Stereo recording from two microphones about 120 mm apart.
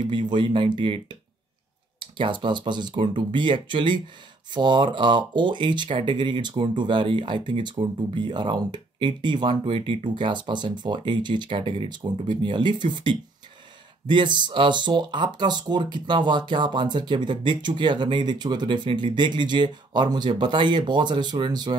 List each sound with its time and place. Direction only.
0.0 s speech: 40° right (ahead or behind)